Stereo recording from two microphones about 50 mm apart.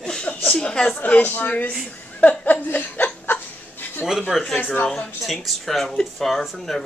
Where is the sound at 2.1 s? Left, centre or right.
Left.